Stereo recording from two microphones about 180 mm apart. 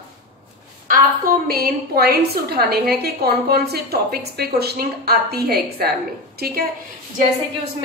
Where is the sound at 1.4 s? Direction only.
60° right (ahead or behind).